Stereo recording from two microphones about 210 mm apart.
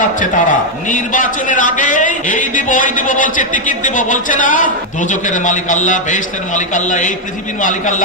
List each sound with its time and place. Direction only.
0.0 s a man's voice: 40° left (ahead or behind)